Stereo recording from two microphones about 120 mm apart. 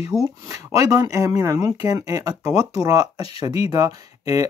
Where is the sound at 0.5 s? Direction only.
25° right (ahead or behind).